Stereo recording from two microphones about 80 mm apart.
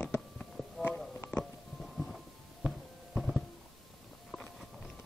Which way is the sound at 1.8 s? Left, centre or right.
Centre.